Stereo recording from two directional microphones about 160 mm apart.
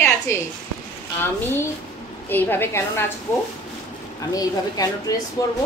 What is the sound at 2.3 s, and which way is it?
Speech, 10° left (ahead or behind).